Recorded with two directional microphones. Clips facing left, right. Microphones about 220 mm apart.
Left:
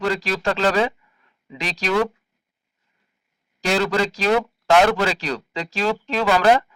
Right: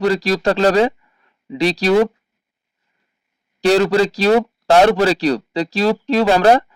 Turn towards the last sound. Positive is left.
turn(degrees=-35)  # may be behind; listen again after turning